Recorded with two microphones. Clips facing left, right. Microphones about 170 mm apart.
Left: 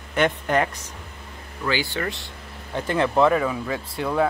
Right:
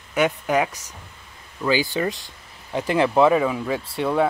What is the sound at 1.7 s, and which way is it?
Speech, 15° right (ahead or behind).